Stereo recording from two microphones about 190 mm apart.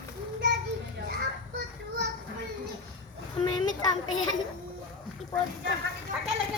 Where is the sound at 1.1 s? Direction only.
60° right (ahead or behind).